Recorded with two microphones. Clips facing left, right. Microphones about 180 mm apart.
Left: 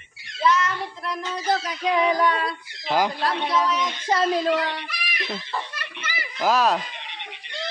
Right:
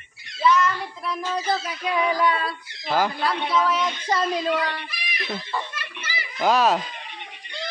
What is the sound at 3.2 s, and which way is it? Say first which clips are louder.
Speech: even; 5° right (ahead or behind).